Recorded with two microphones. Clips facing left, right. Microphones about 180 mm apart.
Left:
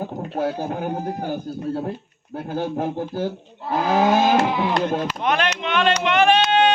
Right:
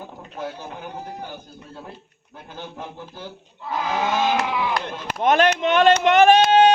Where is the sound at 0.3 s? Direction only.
40° left (ahead or behind).